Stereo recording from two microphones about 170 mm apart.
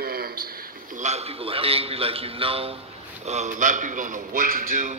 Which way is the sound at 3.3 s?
45° right (ahead or behind).